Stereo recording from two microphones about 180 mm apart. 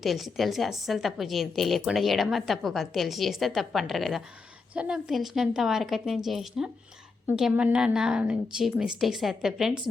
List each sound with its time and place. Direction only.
0.0 s a woman's voice: centre (ahead or behind)